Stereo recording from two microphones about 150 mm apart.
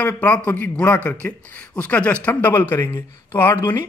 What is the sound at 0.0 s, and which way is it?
A man's voice, 10° left (ahead or behind).